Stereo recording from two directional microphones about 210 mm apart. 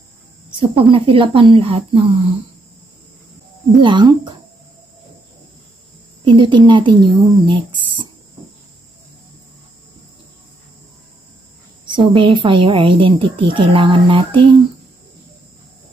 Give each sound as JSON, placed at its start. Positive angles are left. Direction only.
{"t": 0.6, "sound": "a woman's voice", "side_deg": -25}
{"t": 3.8, "sound": "a woman's voice", "side_deg": -20}
{"t": 6.2, "sound": "a woman's voice", "side_deg": -20}
{"t": 11.8, "sound": "a woman's voice", "side_deg": -25}